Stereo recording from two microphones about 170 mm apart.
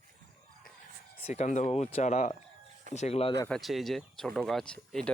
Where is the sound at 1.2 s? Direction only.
40° left (ahead or behind).